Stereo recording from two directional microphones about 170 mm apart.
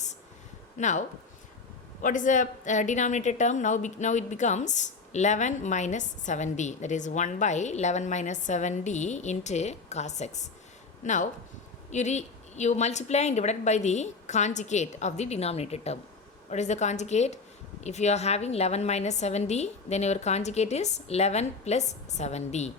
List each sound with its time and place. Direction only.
0.8 s a woman's voice: 45° left (ahead or behind)